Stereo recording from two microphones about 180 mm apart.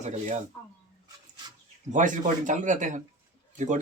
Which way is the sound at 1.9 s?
45° right (ahead or behind).